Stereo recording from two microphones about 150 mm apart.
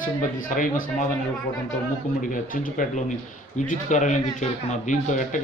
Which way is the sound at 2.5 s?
60° left (ahead or behind).